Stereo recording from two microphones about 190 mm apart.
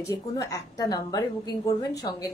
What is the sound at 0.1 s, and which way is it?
A woman's voice, 20° left (ahead or behind).